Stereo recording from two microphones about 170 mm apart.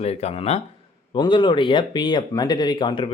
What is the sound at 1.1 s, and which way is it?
Speech, 25° left (ahead or behind).